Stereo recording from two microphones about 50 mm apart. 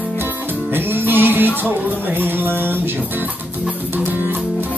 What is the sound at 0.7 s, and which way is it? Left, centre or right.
Music, right.